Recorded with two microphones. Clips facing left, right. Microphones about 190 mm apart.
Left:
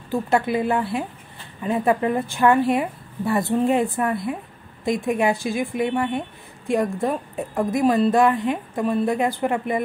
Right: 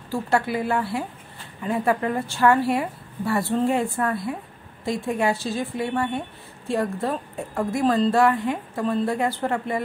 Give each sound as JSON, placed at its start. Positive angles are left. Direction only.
{"t": 0.1, "sound": "a woman's voice", "side_deg": 20}